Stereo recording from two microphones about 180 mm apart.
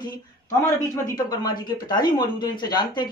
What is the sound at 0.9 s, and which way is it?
Speech, 20° left (ahead or behind).